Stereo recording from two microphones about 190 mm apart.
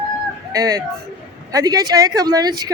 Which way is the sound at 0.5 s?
20° right (ahead or behind).